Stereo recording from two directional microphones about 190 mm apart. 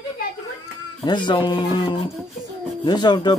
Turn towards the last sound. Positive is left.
turn(degrees=20)  # may be behind; listen again after turning